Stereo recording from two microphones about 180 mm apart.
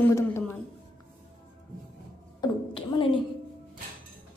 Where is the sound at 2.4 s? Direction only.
25° left (ahead or behind).